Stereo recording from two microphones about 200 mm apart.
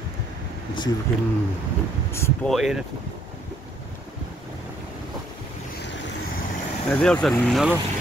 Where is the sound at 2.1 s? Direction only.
15° left (ahead or behind).